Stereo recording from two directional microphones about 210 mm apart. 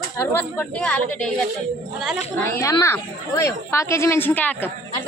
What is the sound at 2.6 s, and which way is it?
Speech, 15° left (ahead or behind).